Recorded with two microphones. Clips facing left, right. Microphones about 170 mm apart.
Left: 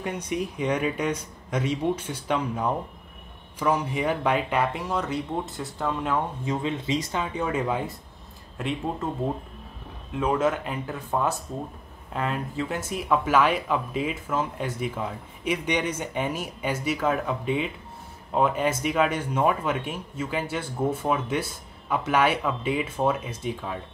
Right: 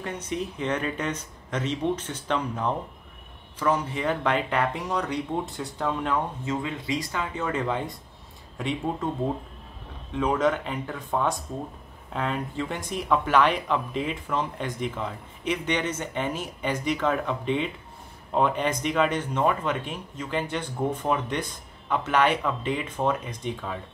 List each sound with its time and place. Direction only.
0.0 s speech: 10° left (ahead or behind)
6.4 s speech: 20° left (ahead or behind); by 9.1 s centre (ahead or behind)
10.1 s speech: 5° left (ahead or behind)